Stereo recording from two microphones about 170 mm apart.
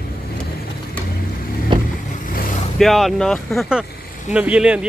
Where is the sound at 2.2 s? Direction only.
55° left (ahead or behind).